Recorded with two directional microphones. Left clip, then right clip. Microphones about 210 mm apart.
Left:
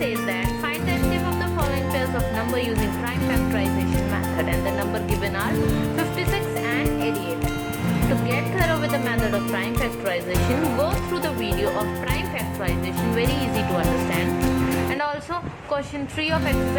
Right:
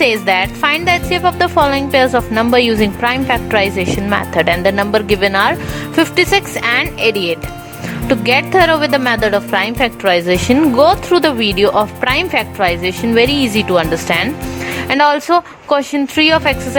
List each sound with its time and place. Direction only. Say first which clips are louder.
0.0 s speech: right 13 dB; 50° right (ahead or behind)
8.3 s speech: right 16 dB; 50° right (ahead or behind)